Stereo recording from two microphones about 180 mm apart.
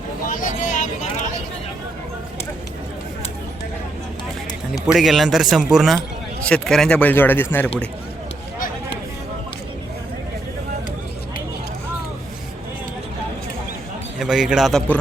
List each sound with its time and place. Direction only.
0.3 s a sound: 45° left (ahead or behind)
4.9 s a man's voice: centre (ahead or behind)
14.2 s a man's voice: 5° right (ahead or behind)